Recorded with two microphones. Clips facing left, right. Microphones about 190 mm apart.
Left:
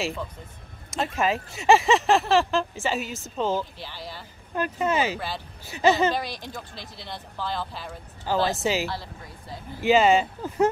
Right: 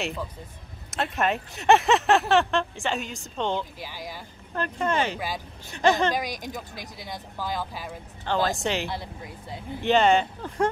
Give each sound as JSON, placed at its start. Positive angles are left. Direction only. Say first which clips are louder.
{"t": 0.8, "sound": "speech", "louder": "left 1 dB", "side_deg": 0}
{"t": 3.8, "sound": "speech", "louder": "right 1 dB", "side_deg": -10}
{"t": 4.6, "sound": "speech", "louder": "left 1 dB", "side_deg": 5}
{"t": 6.1, "sound": "speech", "louder": "right 1 dB", "side_deg": -15}
{"t": 8.3, "sound": "speech", "louder": "left 1 dB", "side_deg": 5}
{"t": 8.9, "sound": "speech", "louder": "right 1 dB", "side_deg": -20}
{"t": 9.8, "sound": "speech", "louder": "left 1 dB", "side_deg": 5}